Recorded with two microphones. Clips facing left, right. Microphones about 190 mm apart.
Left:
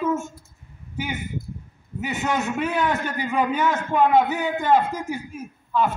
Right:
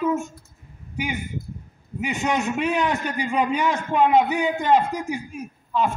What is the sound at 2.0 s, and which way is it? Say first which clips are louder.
A man's voice: right 1 dB; 20° right (ahead or behind).